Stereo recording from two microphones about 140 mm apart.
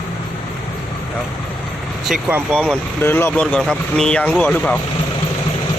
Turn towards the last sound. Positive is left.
turn(degrees=10)  # may be behind; listen again after turning